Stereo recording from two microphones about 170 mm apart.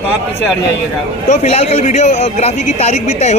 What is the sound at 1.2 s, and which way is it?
A man's voice, 40° left (ahead or behind).